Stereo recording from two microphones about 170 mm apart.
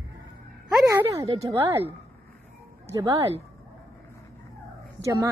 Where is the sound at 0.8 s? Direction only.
15° right (ahead or behind).